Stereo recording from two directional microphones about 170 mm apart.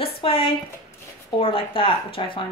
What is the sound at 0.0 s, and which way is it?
A woman's voice, 30° left (ahead or behind).